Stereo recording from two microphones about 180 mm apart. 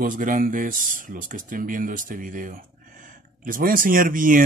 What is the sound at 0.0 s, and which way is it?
Speech, 50° right (ahead or behind).